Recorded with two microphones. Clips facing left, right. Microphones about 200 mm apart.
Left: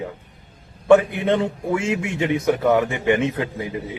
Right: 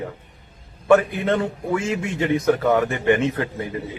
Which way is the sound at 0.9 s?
20° left (ahead or behind).